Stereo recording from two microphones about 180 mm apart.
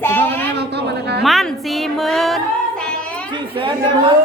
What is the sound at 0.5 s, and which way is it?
Speech, 65° right (ahead or behind).